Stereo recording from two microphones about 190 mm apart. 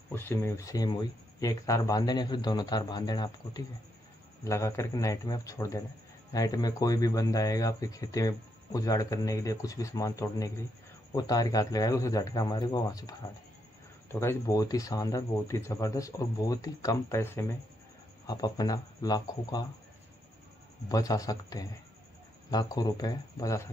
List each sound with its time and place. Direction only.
0.1 s a man's voice: 15° left (ahead or behind)
14.2 s a man's voice: 20° left (ahead or behind)
20.9 s a man's voice: 20° left (ahead or behind)